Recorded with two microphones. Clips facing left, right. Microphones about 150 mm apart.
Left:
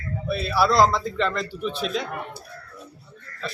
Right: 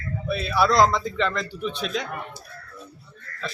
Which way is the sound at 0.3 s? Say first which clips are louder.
Even; centre (ahead or behind).